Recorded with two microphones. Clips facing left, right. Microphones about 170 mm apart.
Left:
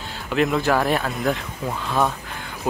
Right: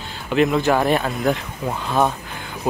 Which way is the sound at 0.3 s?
Centre (ahead or behind).